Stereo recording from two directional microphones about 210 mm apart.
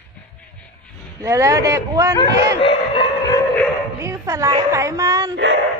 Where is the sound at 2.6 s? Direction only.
25° left (ahead or behind).